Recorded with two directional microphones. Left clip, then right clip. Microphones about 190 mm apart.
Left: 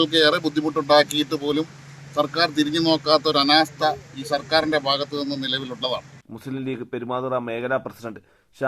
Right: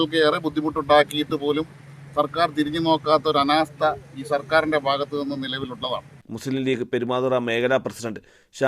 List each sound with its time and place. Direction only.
0.3 s speech: centre (ahead or behind)
2.6 s a man's voice: 25° right (ahead or behind)
2.8 s speech: centre (ahead or behind)
6.3 s a man's voice: 25° right (ahead or behind)